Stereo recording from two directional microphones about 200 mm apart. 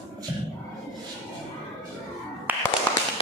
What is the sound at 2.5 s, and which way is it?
Tap, 10° right (ahead or behind).